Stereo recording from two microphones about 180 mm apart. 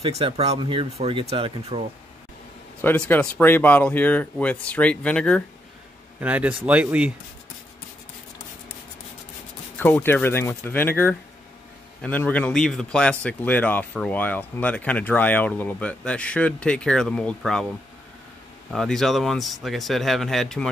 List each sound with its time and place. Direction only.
0.2 s speech: 30° right (ahead or behind)
2.8 s speech: 10° left (ahead or behind)
6.1 s speech: 10° right (ahead or behind)
9.8 s speech: 10° left (ahead or behind)
18.7 s speech: centre (ahead or behind)